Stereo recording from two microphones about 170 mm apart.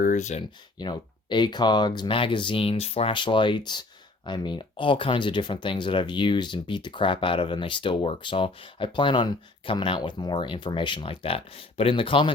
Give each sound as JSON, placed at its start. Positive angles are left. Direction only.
{"t": 0.0, "sound": "speech", "side_deg": 45}
{"t": 0.8, "sound": "speech", "side_deg": 25}